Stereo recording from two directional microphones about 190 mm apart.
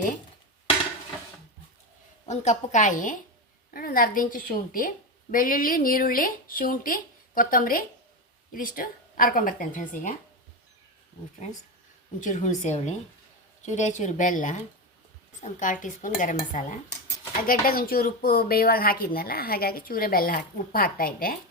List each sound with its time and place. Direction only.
2.2 s a woman's voice: 35° left (ahead or behind)
12.2 s a woman's voice: 40° left (ahead or behind)